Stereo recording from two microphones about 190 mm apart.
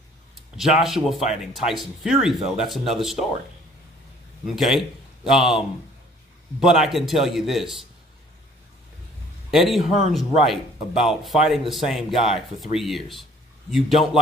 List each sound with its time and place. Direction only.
0.6 s speech: centre (ahead or behind)
4.5 s speech: centre (ahead or behind)
6.6 s speech: centre (ahead or behind)
9.5 s a man's voice: centre (ahead or behind)